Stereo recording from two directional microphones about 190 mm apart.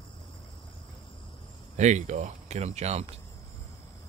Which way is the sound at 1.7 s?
40° right (ahead or behind).